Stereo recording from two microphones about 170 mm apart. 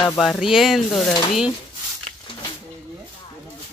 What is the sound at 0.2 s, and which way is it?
Speech, centre (ahead or behind).